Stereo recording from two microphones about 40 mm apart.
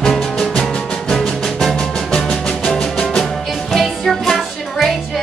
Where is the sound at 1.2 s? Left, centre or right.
Centre.